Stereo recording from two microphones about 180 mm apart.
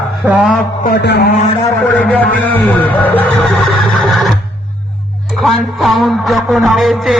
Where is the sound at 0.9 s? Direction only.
65° left (ahead or behind).